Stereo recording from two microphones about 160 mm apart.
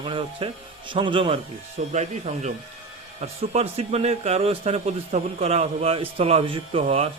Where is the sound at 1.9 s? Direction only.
45° right (ahead or behind).